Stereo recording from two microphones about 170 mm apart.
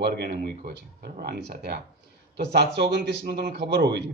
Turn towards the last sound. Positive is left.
turn(degrees=-80)